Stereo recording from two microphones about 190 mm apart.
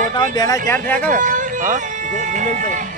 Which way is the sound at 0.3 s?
20° left (ahead or behind).